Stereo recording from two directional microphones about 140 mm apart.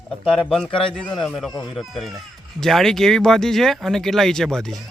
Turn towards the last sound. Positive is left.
turn(degrees=5)  # may be behind; listen again after turning